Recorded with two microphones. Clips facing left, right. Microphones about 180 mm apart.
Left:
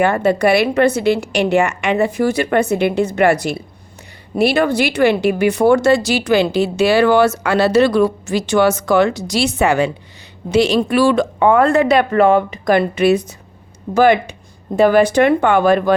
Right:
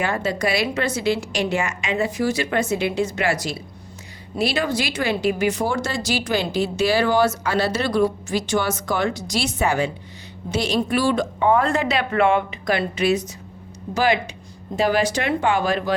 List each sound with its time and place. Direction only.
0.0 s a woman's voice: 60° left (ahead or behind)